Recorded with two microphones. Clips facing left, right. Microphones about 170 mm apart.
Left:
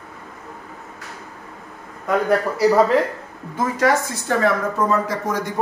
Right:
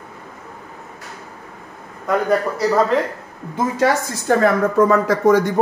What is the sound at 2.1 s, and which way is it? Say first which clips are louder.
Speech: right 1 dB; 5° left (ahead or behind).